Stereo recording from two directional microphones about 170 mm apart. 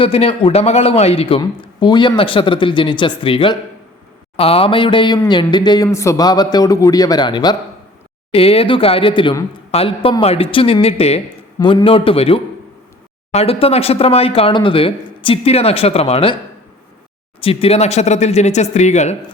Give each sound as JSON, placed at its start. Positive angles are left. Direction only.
{"t": 0.0, "sound": "a man's voice", "side_deg": 35}
{"t": 17.4, "sound": "a man's voice", "side_deg": 35}